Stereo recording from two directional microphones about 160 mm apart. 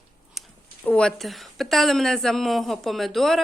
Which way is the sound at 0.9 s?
5° left (ahead or behind).